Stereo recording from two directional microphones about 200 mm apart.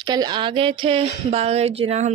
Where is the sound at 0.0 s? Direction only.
20° right (ahead or behind).